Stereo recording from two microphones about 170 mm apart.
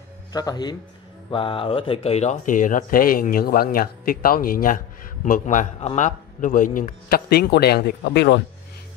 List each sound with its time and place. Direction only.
0.3 s a man's voice: 20° left (ahead or behind); by 8.4 s 85° left